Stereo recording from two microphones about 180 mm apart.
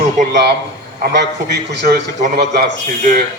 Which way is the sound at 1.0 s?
65° right (ahead or behind).